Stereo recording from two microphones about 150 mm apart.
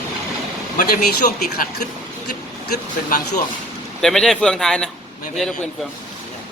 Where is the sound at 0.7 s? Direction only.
65° left (ahead or behind).